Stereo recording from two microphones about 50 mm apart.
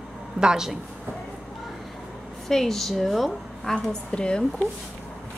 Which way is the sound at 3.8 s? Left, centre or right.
Centre.